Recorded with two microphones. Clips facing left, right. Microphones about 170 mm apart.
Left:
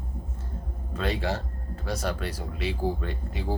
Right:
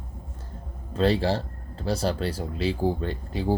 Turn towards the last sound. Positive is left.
turn(degrees=-30)  # may be behind; listen again after turning